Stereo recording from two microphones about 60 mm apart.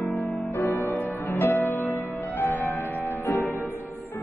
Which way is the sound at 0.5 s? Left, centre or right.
Left.